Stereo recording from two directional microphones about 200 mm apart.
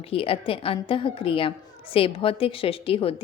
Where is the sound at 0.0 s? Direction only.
30° left (ahead or behind).